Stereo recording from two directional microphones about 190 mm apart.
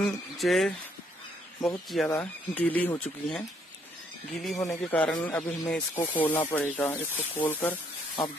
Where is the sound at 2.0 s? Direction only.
10° left (ahead or behind).